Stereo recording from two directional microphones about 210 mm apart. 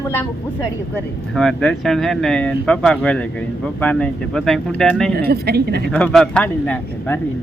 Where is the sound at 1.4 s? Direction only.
Centre (ahead or behind).